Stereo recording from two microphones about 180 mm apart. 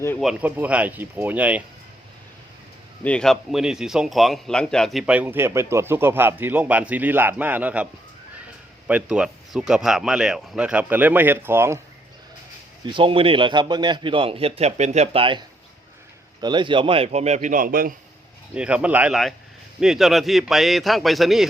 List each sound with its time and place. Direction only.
0.2 s a man's voice: 5° right (ahead or behind)
3.0 s a man's voice: 5° left (ahead or behind)
8.9 s speech: 5° right (ahead or behind)
12.8 s a man's voice: 30° right (ahead or behind); by 17.9 s 50° right (ahead or behind)
18.5 s a man's voice: 5° right (ahead or behind)